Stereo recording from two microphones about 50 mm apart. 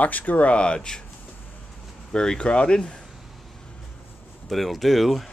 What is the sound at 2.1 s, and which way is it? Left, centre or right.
Speech, centre.